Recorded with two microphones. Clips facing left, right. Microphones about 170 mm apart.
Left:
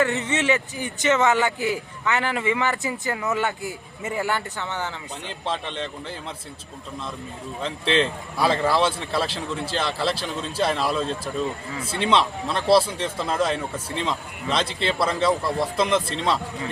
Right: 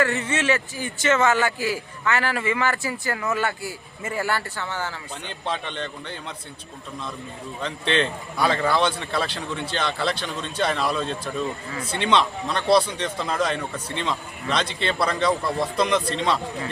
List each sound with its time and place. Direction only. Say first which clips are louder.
0.0 s a man's voice: left 1 dB; 20° left (ahead or behind)
5.2 s a man's voice: even; centre (ahead or behind)
7.6 s a man's voice: left 1 dB; centre (ahead or behind)